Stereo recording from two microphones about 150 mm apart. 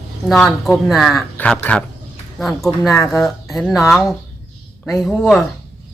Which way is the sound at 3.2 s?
Centre (ahead or behind).